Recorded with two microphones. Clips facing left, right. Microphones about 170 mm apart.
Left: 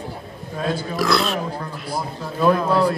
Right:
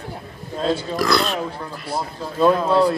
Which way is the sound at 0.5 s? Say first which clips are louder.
Right 3 dB; 25° right (ahead or behind).